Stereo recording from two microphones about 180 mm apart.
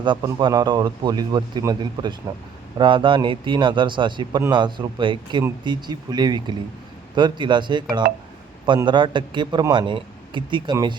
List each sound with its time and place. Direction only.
0.0 s a man's voice: 25° right (ahead or behind)